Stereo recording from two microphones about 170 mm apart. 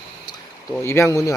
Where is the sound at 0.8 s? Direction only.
15° left (ahead or behind).